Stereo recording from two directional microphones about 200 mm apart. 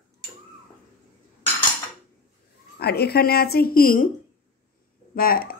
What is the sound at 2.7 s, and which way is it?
A woman's voice, 55° left (ahead or behind).